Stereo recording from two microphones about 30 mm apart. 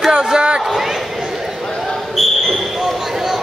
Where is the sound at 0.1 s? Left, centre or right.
Right.